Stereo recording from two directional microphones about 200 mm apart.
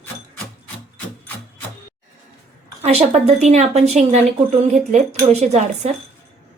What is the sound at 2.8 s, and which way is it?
A woman's voice, 30° right (ahead or behind).